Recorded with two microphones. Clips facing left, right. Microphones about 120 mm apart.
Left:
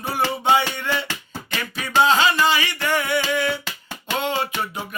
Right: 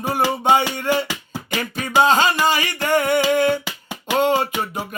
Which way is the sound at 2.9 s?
45° right (ahead or behind).